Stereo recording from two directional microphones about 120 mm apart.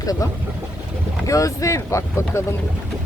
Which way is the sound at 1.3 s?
30° left (ahead or behind).